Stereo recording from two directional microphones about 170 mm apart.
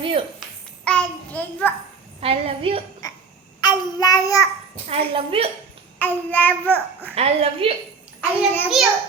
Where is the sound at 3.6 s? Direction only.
25° left (ahead or behind).